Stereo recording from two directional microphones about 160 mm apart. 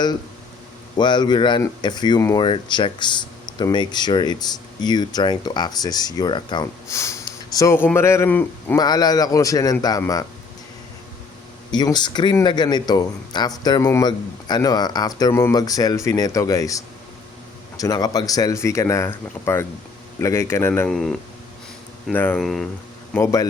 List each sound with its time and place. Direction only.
0.9 s speech: 30° left (ahead or behind)
6.8 s speech: 15° left (ahead or behind)
8.8 s speech: 25° left (ahead or behind)
11.7 s a man's voice: 25° left (ahead or behind)
20.9 s speech: 5° left (ahead or behind)
23.1 s speech: 20° left (ahead or behind)